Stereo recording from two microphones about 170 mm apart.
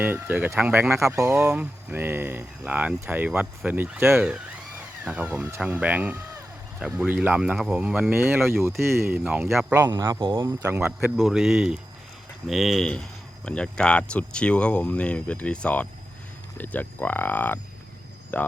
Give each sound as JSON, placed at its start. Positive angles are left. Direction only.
{"t": 0.0, "sound": "speech", "side_deg": -10}